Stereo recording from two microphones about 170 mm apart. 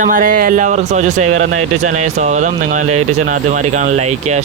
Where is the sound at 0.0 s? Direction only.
50° right (ahead or behind).